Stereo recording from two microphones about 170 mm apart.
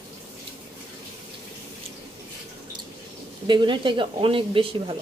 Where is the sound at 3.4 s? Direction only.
25° right (ahead or behind).